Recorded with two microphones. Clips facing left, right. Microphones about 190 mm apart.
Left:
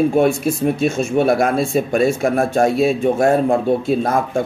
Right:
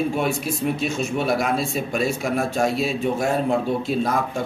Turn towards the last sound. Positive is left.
turn(degrees=50)  # may be behind; listen again after turning